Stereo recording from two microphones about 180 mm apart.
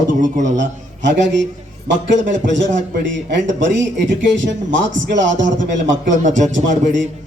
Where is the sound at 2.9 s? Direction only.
75° right (ahead or behind); by 5.7 s 90° right.